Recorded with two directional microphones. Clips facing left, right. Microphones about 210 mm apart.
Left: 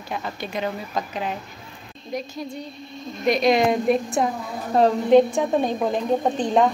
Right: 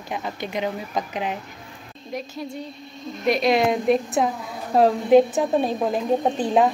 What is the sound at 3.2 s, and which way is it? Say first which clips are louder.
A woman's voice: left 1 dB; 5° right (ahead or behind).